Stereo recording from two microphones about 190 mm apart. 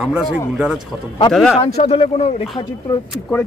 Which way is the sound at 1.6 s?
30° left (ahead or behind).